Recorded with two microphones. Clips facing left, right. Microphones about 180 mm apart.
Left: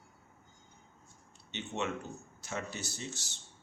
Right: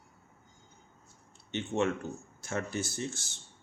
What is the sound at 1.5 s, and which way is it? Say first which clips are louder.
Speech: right 7 dB; 50° right (ahead or behind).